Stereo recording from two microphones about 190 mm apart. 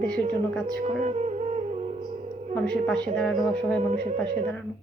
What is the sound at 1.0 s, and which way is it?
Music, 35° right (ahead or behind).